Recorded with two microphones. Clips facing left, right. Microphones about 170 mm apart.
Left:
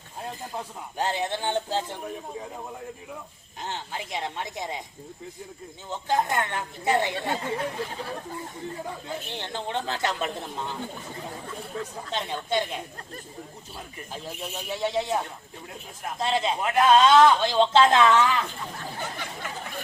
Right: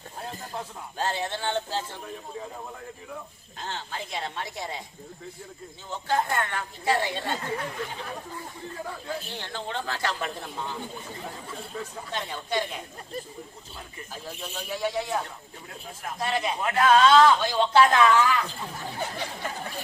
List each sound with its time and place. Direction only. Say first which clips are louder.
0.9 s speech: left 2 dB; 15° left (ahead or behind)
3.6 s speech: left 1 dB; 20° left (ahead or behind)
5.9 s a man's voice: left 1 dB; 20° left (ahead or behind)
12.1 s a man's voice: left 2 dB; 20° left (ahead or behind)
14.1 s a man's voice: left 2 dB; 25° left (ahead or behind)